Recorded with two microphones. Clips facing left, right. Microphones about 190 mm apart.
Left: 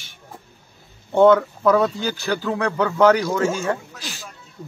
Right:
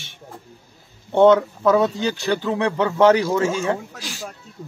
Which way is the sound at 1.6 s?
Centre (ahead or behind).